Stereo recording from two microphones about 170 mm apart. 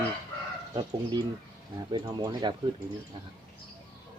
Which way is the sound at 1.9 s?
25° right (ahead or behind).